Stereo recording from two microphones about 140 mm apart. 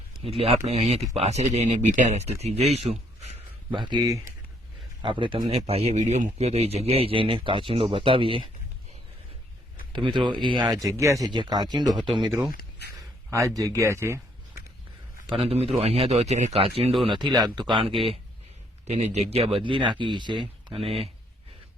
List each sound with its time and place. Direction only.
0.3 s speech: 45° right (ahead or behind)
3.7 s speech: 35° right (ahead or behind)
9.9 s speech: 35° right (ahead or behind)
13.3 s speech: 25° right (ahead or behind)
15.3 s speech: 40° right (ahead or behind)
17.2 s speech: centre (ahead or behind)
17.4 s speech: 30° right (ahead or behind)
18.9 s speech: 50° right (ahead or behind)